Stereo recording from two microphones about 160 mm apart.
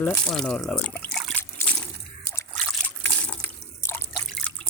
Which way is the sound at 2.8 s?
10° left (ahead or behind).